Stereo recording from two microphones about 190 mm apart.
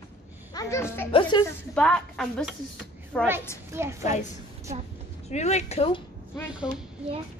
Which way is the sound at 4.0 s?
40° left (ahead or behind).